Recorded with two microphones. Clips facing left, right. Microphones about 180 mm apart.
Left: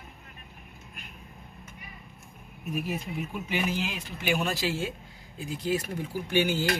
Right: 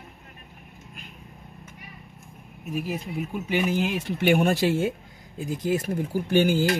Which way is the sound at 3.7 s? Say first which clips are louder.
Right 7 dB; 50° right (ahead or behind).